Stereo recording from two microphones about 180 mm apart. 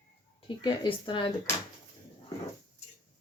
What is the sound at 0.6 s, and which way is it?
Speech, 25° left (ahead or behind).